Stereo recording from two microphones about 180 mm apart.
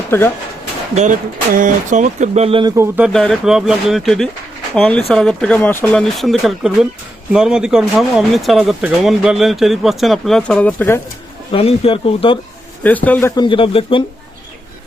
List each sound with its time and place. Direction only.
0.1 s speech: 15° left (ahead or behind)
0.9 s speech: 45° right (ahead or behind); by 2.7 s 30° right (ahead or behind)
2.7 s speech: 10° right (ahead or behind)
3.1 s speech: 5° left (ahead or behind)
11.5 s speech: 30° left (ahead or behind)
13.1 s speech: 10° left (ahead or behind)
13.3 s speech: 25° left (ahead or behind)